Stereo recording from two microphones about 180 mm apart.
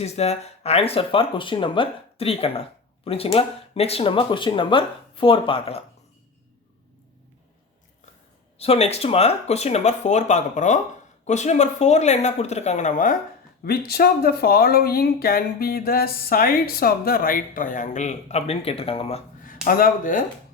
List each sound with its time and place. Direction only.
0.0 s speech: 35° left (ahead or behind)
8.5 s speech: 35° left (ahead or behind)
13.7 s speech: 60° left (ahead or behind); by 19.2 s 30° left (ahead or behind)
19.6 s speech: 50° left (ahead or behind)